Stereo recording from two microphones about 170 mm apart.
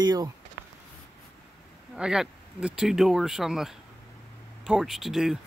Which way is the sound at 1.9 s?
5° right (ahead or behind).